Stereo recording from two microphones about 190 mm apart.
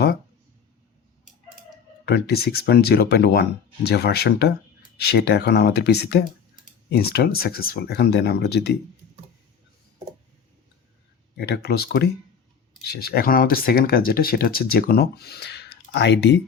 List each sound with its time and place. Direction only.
2.0 s speech: 60° left (ahead or behind)
11.3 s speech: 60° left (ahead or behind)